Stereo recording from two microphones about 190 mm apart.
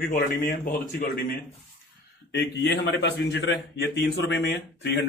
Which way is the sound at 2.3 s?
60° left (ahead or behind).